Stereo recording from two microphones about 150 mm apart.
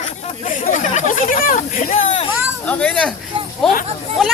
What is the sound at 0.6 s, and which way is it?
Chatter, 55° left (ahead or behind).